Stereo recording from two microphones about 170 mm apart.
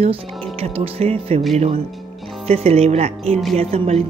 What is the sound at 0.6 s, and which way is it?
Speech, 35° right (ahead or behind).